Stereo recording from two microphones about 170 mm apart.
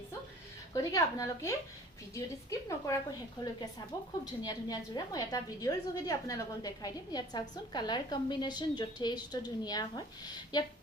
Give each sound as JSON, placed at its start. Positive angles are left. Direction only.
{"t": 0.7, "sound": "a woman's voice", "side_deg": 20}